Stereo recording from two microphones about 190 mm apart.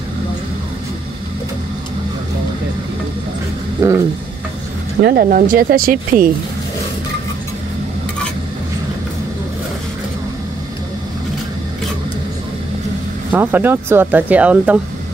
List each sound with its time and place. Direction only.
3.8 s speech: 15° right (ahead or behind)
5.0 s speech: 50° right (ahead or behind)
13.3 s speech: 10° right (ahead or behind)